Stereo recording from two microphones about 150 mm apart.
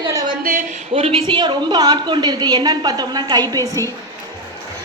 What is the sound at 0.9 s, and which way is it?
A woman's voice, 40° right (ahead or behind).